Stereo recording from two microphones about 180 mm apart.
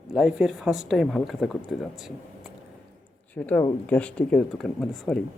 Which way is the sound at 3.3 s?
10° left (ahead or behind).